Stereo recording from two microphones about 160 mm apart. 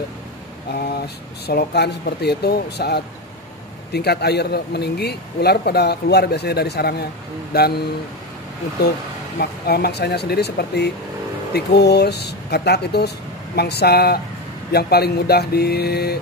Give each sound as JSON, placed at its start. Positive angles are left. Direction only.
{"t": 0.7, "sound": "a man's voice", "side_deg": 75}
{"t": 7.5, "sound": "speech", "side_deg": 75}
{"t": 9.4, "sound": "a man's voice", "side_deg": 85}